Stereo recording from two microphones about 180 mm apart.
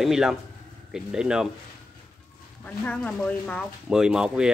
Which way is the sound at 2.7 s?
10° left (ahead or behind).